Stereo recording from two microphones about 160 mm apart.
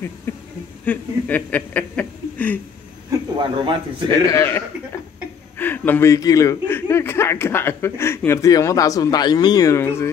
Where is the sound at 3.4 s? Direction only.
30° right (ahead or behind).